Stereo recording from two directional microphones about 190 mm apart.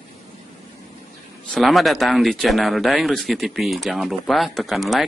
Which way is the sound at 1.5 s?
Centre (ahead or behind).